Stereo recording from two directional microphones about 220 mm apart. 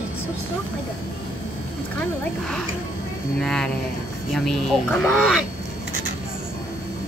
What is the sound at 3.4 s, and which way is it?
Speech, 5° left (ahead or behind).